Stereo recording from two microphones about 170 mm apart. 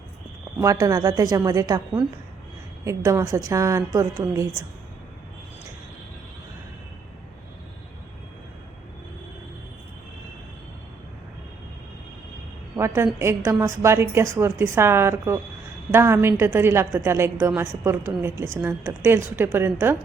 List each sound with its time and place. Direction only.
0.6 s a woman's voice: 20° right (ahead or behind)
12.7 s a sound: 15° right (ahead or behind)
13.1 s a woman's voice: 15° right (ahead or behind)